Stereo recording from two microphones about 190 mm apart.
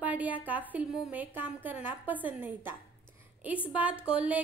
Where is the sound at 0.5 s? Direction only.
10° right (ahead or behind).